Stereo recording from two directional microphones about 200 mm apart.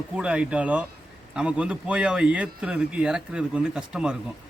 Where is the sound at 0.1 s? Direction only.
5° right (ahead or behind).